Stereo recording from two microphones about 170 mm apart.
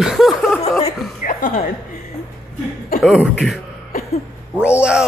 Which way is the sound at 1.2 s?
50° left (ahead or behind).